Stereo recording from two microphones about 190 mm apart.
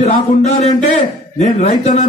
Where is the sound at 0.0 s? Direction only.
35° left (ahead or behind).